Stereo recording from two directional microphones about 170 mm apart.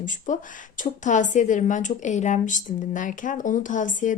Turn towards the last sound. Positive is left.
turn(degrees=50)  # may be behind; listen again after turning